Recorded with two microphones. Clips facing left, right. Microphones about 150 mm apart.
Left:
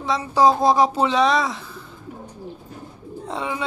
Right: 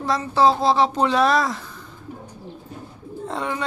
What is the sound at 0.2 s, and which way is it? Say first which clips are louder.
Speech: left 2 dB; 10° left (ahead or behind).